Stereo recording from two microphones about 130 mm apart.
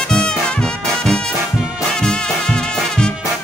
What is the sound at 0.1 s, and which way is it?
Music, 5° left (ahead or behind).